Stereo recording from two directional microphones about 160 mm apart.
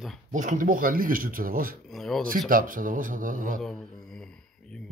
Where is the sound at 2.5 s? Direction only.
60° right (ahead or behind).